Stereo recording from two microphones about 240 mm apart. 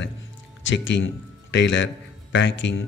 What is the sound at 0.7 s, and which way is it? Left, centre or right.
A man's voice, left.